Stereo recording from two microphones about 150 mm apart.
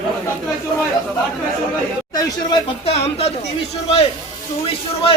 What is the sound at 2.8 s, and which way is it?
Speech, 45° left (ahead or behind).